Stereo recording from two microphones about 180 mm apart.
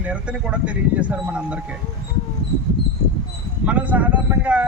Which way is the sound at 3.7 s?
10° right (ahead or behind).